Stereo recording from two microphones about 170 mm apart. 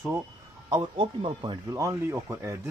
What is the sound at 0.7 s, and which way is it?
Speech, 25° right (ahead or behind).